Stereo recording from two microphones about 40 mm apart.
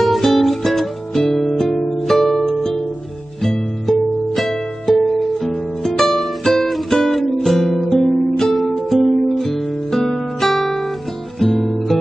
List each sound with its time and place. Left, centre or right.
0.0 s music: centre
3.4 s music: centre